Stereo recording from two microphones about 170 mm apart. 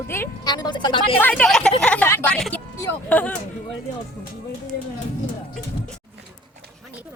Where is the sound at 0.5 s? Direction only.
25° left (ahead or behind).